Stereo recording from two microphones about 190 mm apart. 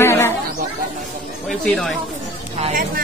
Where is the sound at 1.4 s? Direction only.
5° left (ahead or behind).